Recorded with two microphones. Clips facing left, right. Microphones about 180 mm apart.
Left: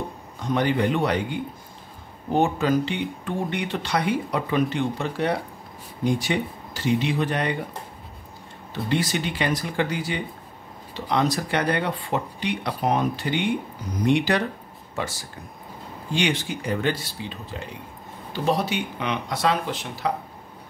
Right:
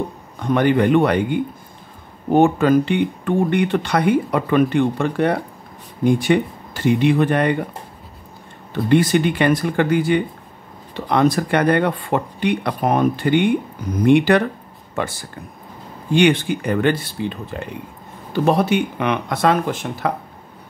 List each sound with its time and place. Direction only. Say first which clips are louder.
0.4 s speech: right 6 dB; 55° right (ahead or behind)
8.8 s speech: right 10 dB; 55° right (ahead or behind)